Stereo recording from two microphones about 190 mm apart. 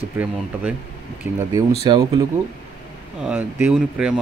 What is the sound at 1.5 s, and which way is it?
Speech, 20° right (ahead or behind).